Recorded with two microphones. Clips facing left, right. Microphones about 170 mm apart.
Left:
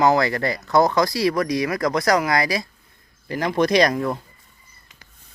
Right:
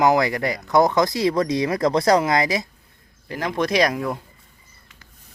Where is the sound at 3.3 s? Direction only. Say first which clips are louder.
Left 3 dB; centre (ahead or behind).